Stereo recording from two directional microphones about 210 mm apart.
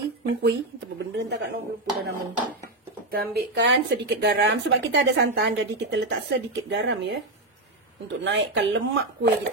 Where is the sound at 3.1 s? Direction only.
45° right (ahead or behind).